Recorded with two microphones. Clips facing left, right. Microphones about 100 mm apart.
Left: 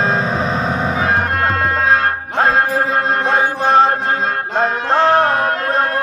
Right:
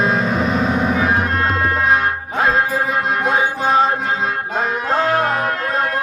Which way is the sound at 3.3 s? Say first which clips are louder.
Left 2 dB; 60° left (ahead or behind).